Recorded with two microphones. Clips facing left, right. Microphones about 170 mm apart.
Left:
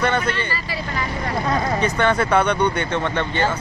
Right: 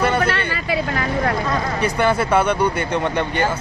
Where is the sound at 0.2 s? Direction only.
70° right (ahead or behind).